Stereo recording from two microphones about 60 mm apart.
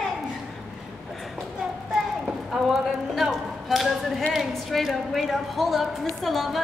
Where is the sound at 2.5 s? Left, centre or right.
Centre.